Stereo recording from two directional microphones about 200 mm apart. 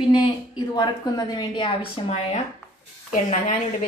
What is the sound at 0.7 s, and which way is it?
A woman's voice, 20° left (ahead or behind).